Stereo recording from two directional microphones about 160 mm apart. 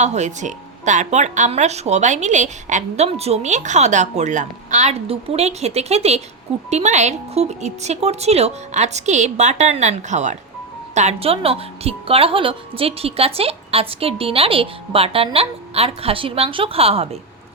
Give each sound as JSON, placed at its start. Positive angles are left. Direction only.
{"t": 0.0, "sound": "a woman's voice", "side_deg": -45}